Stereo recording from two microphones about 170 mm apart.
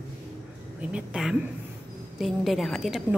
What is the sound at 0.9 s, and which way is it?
A woman's voice, 5° right (ahead or behind).